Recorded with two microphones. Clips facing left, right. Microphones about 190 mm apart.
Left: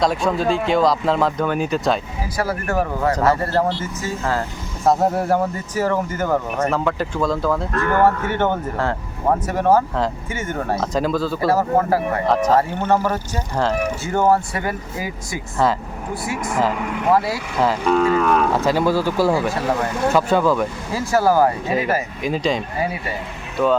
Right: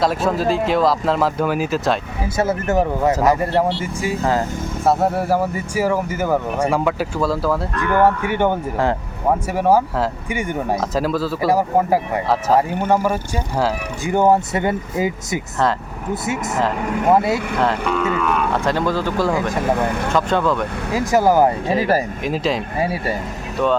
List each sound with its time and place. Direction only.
0.0 s speech: centre (ahead or behind)
2.2 s speech: 25° right (ahead or behind)
4.9 s speech: 5° right (ahead or behind)
10.8 s speech: centre (ahead or behind)
11.4 s speech: 15° right (ahead or behind)
12.2 s speech: 5° right (ahead or behind); by 17.4 s 20° right (ahead or behind)
17.9 s speech: 35° left (ahead or behind)
18.5 s speech: 5° left (ahead or behind)
20.9 s speech: 15° right (ahead or behind)
22.2 s speech: centre (ahead or behind)